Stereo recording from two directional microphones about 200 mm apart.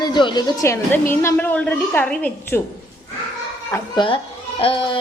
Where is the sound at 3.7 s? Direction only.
20° left (ahead or behind).